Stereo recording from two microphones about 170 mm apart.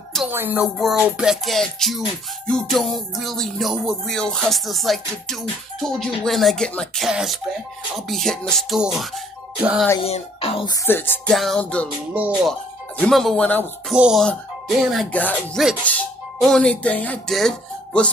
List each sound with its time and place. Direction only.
0.3 s speech: 10° right (ahead or behind)
0.9 s music: 5° right (ahead or behind)
10.0 s speech: 35° left (ahead or behind)
10.7 s music: 10° left (ahead or behind)
12.1 s speech: 10° right (ahead or behind)
13.0 s music: centre (ahead or behind)
13.9 s music: 5° right (ahead or behind)
15.1 s music: 10° left (ahead or behind)